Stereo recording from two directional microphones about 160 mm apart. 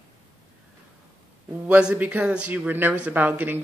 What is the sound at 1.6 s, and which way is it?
Speech, 10° right (ahead or behind).